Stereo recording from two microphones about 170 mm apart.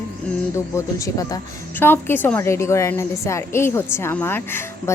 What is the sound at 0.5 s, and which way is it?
A woman's voice, 15° left (ahead or behind).